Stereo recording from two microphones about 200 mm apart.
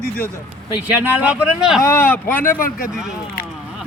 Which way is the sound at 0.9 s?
10° right (ahead or behind).